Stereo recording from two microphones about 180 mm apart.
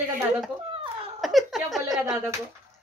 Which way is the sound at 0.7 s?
30° right (ahead or behind).